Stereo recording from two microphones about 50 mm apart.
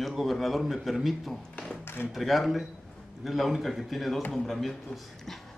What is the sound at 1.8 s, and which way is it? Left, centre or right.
Speech, left.